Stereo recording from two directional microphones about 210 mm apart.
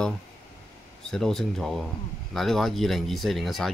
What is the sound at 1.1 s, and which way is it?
Speech, centre (ahead or behind).